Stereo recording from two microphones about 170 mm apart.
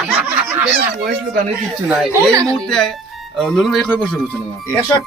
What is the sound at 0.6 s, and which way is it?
Fowl, 70° right (ahead or behind).